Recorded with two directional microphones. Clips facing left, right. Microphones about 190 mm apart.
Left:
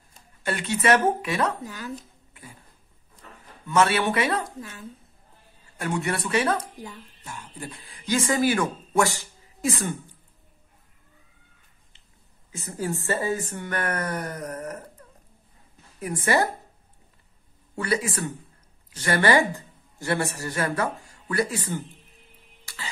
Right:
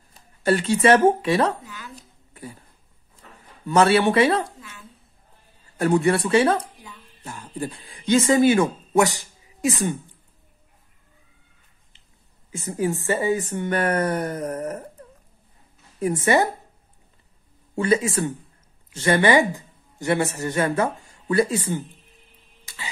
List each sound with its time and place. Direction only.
0.4 s speech: 35° right (ahead or behind)
1.6 s a woman's voice: 40° left (ahead or behind)
3.6 s a man's voice: 35° right (ahead or behind)
4.6 s a woman's voice: 40° left (ahead or behind)
5.8 s speech: 35° right (ahead or behind); by 9.9 s 15° right (ahead or behind)
12.5 s speech: 20° right (ahead or behind)
16.0 s speech: 25° right (ahead or behind)
17.7 s speech: 25° right (ahead or behind)
22.7 s cough: 20° right (ahead or behind)